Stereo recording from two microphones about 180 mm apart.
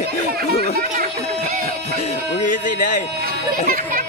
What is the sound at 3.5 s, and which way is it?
Speech, 50° right (ahead or behind).